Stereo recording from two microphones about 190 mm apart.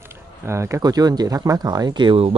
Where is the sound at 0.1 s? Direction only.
15° right (ahead or behind).